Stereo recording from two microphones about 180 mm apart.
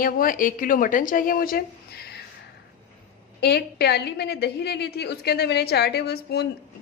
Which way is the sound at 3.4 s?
65° left (ahead or behind).